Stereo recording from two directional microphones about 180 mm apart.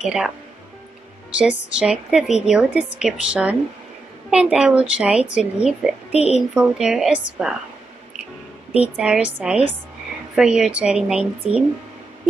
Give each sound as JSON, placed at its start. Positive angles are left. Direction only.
{"t": 0.0, "sound": "a woman's voice", "side_deg": 0}
{"t": 1.4, "sound": "a woman's voice", "side_deg": -5}
{"t": 6.1, "sound": "speech", "side_deg": 35}
{"t": 6.5, "sound": "a woman's voice", "side_deg": -5}
{"t": 8.7, "sound": "a woman's voice", "side_deg": -5}